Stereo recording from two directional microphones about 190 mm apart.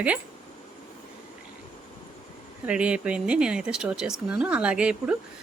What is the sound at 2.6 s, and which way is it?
A woman's voice, 5° right (ahead or behind).